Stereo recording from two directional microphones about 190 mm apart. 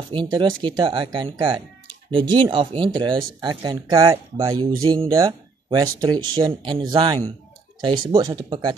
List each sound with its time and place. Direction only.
0.1 s speech: 25° right (ahead or behind)